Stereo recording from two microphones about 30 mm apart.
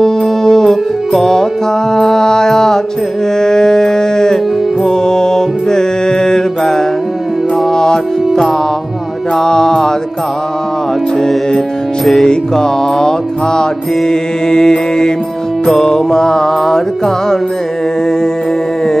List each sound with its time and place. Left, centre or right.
0.0 s music: centre
3.3 s a sound: centre
4.8 s music: left
9.4 s mantra: centre
12.0 s music: centre
12.3 s mantra: left
15.6 s music: centre